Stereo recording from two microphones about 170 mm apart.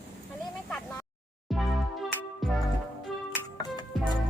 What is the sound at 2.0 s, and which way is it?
Music, centre (ahead or behind).